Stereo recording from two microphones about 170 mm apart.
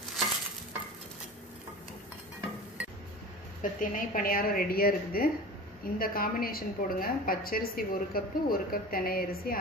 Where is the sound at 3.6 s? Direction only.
50° left (ahead or behind).